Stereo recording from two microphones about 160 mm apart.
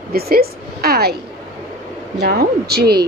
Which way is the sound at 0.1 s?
75° right (ahead or behind).